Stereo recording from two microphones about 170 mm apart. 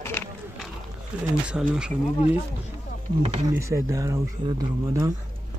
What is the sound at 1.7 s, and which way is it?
Speech, 5° right (ahead or behind).